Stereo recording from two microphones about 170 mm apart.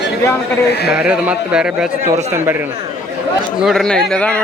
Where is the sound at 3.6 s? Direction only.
Centre (ahead or behind).